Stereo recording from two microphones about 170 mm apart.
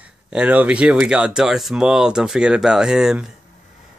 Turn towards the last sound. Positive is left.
turn(degrees=-5)  # may be behind; listen again after turning